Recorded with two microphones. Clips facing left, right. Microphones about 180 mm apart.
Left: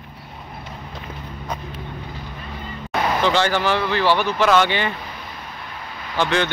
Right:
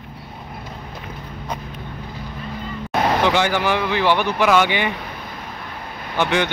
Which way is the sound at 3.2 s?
15° right (ahead or behind).